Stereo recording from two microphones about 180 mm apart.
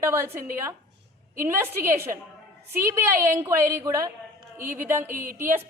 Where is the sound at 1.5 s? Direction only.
10° right (ahead or behind).